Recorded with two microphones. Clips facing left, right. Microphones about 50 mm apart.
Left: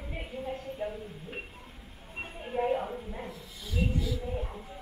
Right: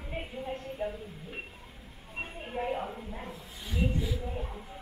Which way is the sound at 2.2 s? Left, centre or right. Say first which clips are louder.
Left 3 dB; centre.